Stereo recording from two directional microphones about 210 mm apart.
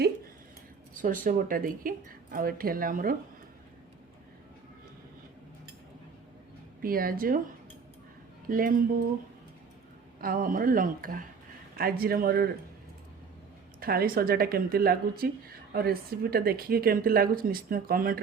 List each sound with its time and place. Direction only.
0.9 s speech: 40° right (ahead or behind)
6.8 s speech: 45° right (ahead or behind)
8.4 s speech: 40° right (ahead or behind)
10.2 s speech: 45° right (ahead or behind)
13.7 s speech: 45° right (ahead or behind)